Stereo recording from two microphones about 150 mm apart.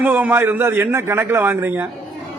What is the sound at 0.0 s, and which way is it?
A man's voice, 10° right (ahead or behind).